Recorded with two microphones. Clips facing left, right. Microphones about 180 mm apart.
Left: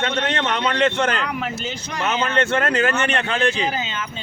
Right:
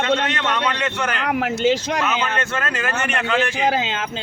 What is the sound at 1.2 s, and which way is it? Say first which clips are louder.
Speech: right 8 dB; 75° right (ahead or behind).